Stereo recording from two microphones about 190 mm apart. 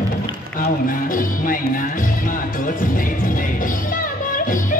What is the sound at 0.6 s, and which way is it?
Music, 45° left (ahead or behind).